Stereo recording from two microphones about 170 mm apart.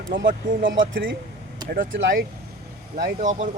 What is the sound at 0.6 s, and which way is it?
Speech, 90° right.